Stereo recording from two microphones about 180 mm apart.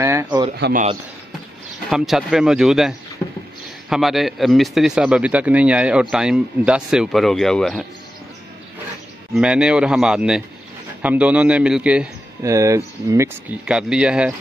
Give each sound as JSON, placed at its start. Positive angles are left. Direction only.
{"t": 0.0, "sound": "a sound", "side_deg": -15}
{"t": 1.9, "sound": "speech", "side_deg": 0}
{"t": 9.3, "sound": "a man's voice", "side_deg": -5}
{"t": 12.4, "sound": "a man's voice", "side_deg": -15}
{"t": 13.7, "sound": "speech", "side_deg": -5}